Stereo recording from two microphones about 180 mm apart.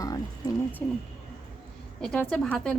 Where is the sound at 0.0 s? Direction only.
20° left (ahead or behind).